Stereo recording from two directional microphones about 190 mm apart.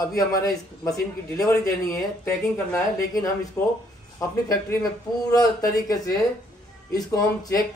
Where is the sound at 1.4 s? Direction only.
15° left (ahead or behind).